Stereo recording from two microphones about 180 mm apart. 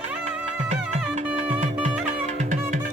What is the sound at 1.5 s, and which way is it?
Music, 40° right (ahead or behind).